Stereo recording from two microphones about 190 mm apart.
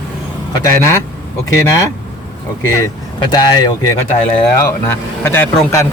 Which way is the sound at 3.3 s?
20° left (ahead or behind).